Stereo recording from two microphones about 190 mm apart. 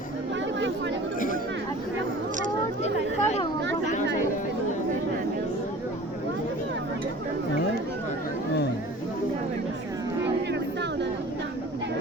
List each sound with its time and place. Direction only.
2.8 s chatter: 35° left (ahead or behind)